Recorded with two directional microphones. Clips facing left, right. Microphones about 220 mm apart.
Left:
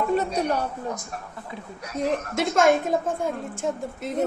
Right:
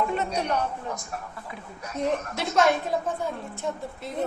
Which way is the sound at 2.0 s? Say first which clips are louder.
Left 3 dB; 50° left (ahead or behind).